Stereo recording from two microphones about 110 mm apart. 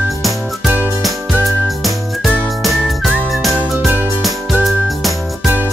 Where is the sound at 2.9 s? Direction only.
Centre (ahead or behind).